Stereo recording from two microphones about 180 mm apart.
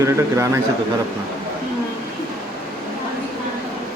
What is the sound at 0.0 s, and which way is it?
Speech, 15° right (ahead or behind).